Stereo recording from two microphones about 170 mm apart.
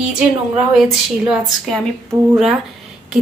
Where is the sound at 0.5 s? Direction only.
5° right (ahead or behind).